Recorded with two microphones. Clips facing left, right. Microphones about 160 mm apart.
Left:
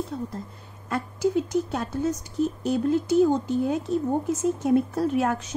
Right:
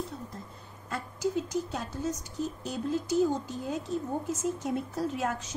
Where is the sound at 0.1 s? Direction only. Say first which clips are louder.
Left 10 dB; 75° left (ahead or behind).